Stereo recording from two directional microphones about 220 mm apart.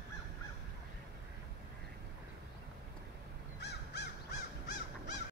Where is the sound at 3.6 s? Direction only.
50° left (ahead or behind).